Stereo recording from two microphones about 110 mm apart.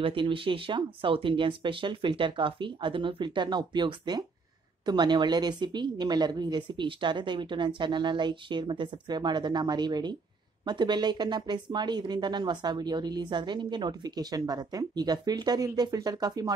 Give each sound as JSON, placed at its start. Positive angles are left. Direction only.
{"t": 0.0, "sound": "a woman's voice", "side_deg": -50}